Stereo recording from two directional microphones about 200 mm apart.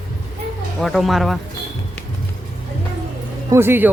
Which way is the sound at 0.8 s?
Centre (ahead or behind).